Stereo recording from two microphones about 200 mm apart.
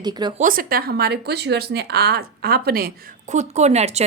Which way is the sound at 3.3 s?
35° right (ahead or behind).